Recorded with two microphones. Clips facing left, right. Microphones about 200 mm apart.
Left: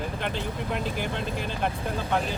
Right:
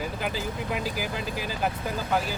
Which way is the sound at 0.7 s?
5° right (ahead or behind).